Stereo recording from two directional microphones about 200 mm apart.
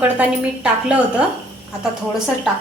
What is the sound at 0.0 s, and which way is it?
A woman's voice, 5° right (ahead or behind).